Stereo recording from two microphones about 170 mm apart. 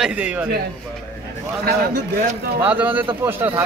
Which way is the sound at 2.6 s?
10° right (ahead or behind).